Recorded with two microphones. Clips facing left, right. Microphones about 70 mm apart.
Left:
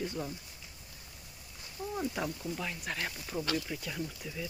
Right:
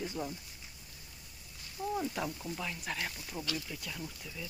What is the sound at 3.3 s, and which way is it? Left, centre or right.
Speech, left.